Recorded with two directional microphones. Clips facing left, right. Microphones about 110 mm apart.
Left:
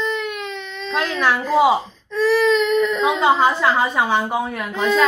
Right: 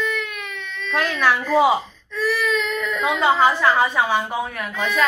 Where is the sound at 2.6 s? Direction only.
20° left (ahead or behind).